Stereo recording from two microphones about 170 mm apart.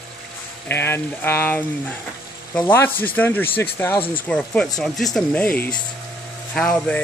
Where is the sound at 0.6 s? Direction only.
15° left (ahead or behind).